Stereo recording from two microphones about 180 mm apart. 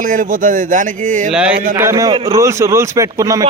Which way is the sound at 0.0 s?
45° right (ahead or behind).